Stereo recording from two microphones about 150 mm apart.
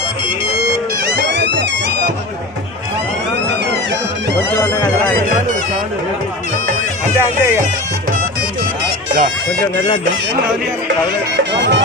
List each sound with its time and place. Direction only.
4.6 s speech: 10° left (ahead or behind)
7.2 s speech: 15° right (ahead or behind)